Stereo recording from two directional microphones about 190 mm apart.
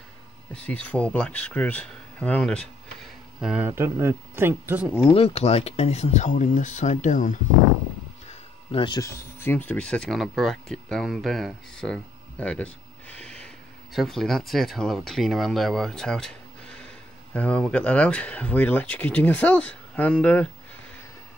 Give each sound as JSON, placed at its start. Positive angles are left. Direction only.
{"t": 0.7, "sound": "speech", "side_deg": 5}
{"t": 3.3, "sound": "speech", "side_deg": -5}
{"t": 5.1, "sound": "speech", "side_deg": 30}
{"t": 8.3, "sound": "speech", "side_deg": 25}